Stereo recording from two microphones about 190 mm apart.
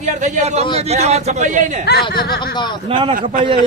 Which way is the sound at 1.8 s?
55° left (ahead or behind).